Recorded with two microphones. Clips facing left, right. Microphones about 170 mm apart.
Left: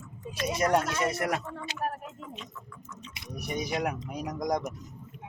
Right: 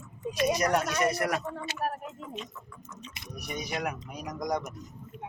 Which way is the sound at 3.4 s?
30° left (ahead or behind).